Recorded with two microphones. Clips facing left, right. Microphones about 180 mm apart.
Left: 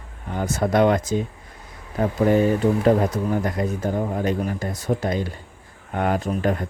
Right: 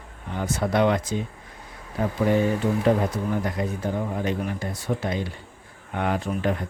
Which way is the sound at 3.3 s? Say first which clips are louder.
Left 3 dB; 45° left (ahead or behind).